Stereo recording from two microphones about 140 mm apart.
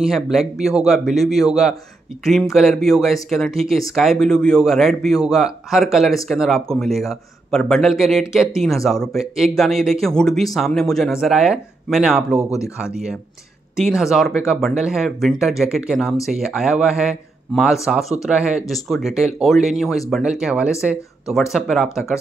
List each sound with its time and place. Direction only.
0.0 s speech: centre (ahead or behind)
12.4 s speech: 20° left (ahead or behind)
12.7 s speech: 5° right (ahead or behind)